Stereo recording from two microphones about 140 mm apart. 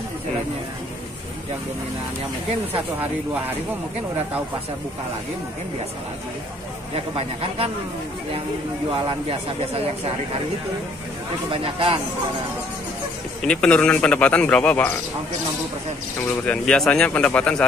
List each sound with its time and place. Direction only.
2.7 s speech: 15° right (ahead or behind)
7.2 s a man's voice: 40° right (ahead or behind)
8.9 s speech: 35° right (ahead or behind)
11.5 s speech: 40° right (ahead or behind)
13.5 s speech: 5° left (ahead or behind)
16.4 s speech: 5° left (ahead or behind)